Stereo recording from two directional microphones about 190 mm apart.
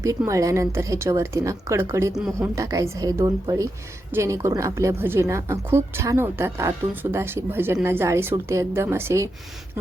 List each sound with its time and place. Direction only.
0.0 s a woman's voice: 15° right (ahead or behind)
2.6 s a woman's voice: 15° right (ahead or behind)